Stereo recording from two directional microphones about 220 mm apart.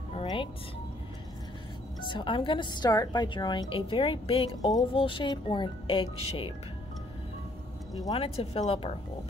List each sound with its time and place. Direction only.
0.1 s music: 25° left (ahead or behind)
2.0 s a woman's voice: 20° left (ahead or behind)
8.0 s a woman's voice: 20° left (ahead or behind)